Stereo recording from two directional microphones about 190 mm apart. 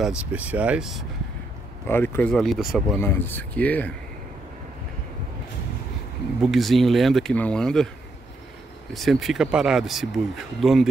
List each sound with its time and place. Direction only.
0.3 s speech: 5° right (ahead or behind)
1.9 s speech: 10° left (ahead or behind)
3.0 s speech: 10° left (ahead or behind)
6.4 s speech: centre (ahead or behind)
8.9 s speech: centre (ahead or behind)